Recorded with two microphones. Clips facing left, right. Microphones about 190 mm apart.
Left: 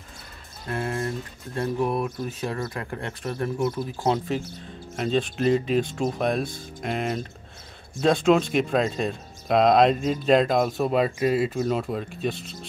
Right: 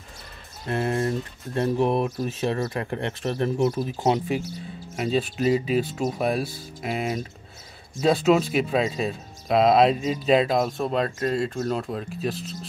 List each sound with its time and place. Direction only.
0.7 s speech: 30° right (ahead or behind)
4.9 s speech: 5° right (ahead or behind)